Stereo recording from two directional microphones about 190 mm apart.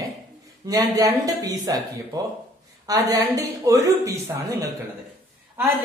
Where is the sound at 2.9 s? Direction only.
20° right (ahead or behind).